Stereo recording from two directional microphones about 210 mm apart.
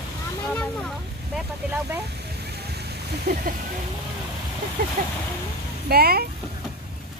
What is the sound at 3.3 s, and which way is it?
Speech, 45° right (ahead or behind).